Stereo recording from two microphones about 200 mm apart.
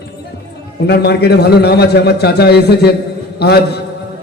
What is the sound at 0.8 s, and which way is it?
A man's voice, 55° left (ahead or behind).